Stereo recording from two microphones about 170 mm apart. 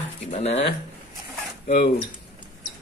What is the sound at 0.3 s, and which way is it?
Speech, 40° left (ahead or behind).